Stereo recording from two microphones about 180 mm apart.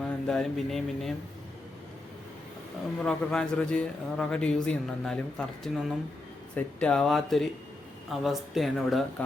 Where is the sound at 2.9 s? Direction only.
5° left (ahead or behind).